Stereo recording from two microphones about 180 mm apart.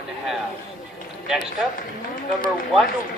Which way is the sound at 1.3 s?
Centre (ahead or behind).